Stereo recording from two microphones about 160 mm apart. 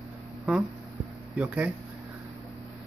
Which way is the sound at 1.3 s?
10° right (ahead or behind).